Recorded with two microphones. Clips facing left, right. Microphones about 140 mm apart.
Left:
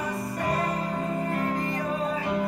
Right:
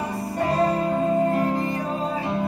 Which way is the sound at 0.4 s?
30° right (ahead or behind).